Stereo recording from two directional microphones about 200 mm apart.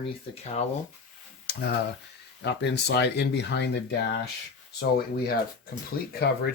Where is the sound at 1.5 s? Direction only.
55° left (ahead or behind).